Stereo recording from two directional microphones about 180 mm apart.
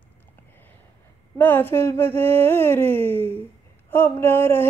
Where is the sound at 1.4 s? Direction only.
10° left (ahead or behind).